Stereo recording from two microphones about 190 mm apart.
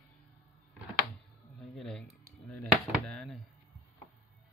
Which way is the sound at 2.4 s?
Centre (ahead or behind).